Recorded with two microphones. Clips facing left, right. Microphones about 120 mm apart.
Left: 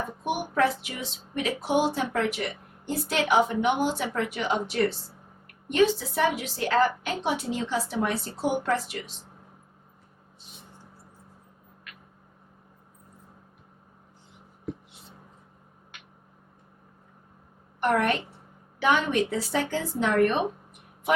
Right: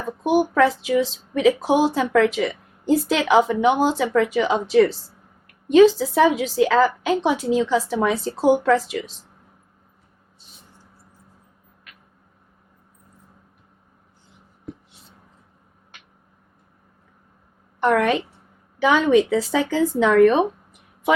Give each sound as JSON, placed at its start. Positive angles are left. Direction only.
{"t": 0.3, "sound": "a woman's voice", "side_deg": -90}
{"t": 17.7, "sound": "a woman's voice", "side_deg": -90}